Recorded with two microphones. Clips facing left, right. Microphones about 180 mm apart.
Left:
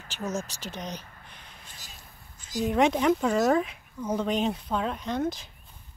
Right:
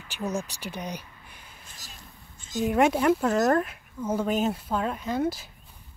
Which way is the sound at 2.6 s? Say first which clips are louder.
Right 1 dB; 5° right (ahead or behind).